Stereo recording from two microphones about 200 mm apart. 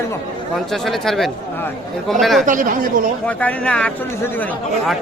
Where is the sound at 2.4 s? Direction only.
40° right (ahead or behind).